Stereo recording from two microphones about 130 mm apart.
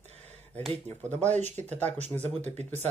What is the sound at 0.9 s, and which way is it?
Speech, 10° left (ahead or behind).